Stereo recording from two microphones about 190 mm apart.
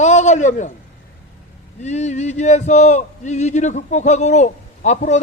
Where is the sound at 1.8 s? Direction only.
35° left (ahead or behind).